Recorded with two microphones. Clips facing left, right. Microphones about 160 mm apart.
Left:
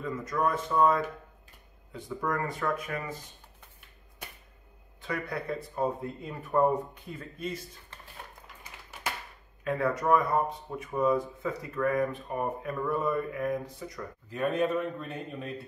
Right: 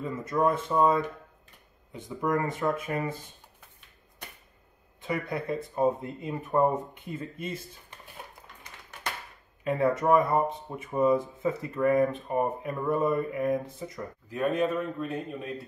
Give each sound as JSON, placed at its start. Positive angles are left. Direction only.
{"t": 0.0, "sound": "speech", "side_deg": -25}
{"t": 5.0, "sound": "speech", "side_deg": -20}
{"t": 9.7, "sound": "speech", "side_deg": -25}
{"t": 14.3, "sound": "speech", "side_deg": 0}